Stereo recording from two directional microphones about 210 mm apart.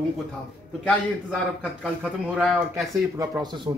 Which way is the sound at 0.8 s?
5° left (ahead or behind).